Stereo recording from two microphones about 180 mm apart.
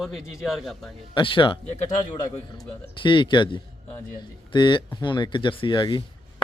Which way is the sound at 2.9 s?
25° left (ahead or behind).